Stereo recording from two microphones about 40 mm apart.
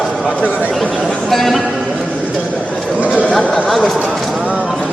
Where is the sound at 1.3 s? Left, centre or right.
Centre.